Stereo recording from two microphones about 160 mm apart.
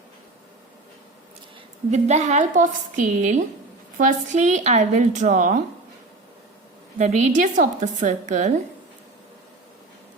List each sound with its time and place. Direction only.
1.9 s a woman's voice: 45° right (ahead or behind)
7.0 s a woman's voice: 50° right (ahead or behind)